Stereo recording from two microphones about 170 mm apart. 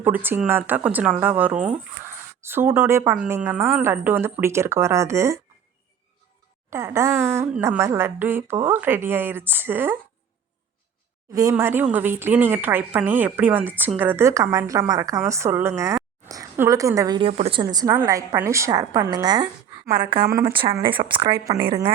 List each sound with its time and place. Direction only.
0.0 s a woman's voice: 10° right (ahead or behind)
6.7 s a woman's voice: 15° right (ahead or behind)
11.3 s a woman's voice: 15° right (ahead or behind)
17.2 s a woman's voice: 35° right (ahead or behind)